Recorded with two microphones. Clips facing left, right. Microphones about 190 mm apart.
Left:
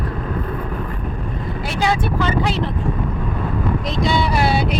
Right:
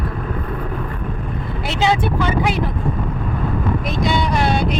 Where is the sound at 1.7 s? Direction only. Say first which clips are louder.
Right 2 dB; 25° right (ahead or behind).